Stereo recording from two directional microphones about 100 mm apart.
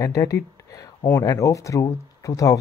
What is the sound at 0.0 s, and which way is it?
Speech, 30° left (ahead or behind).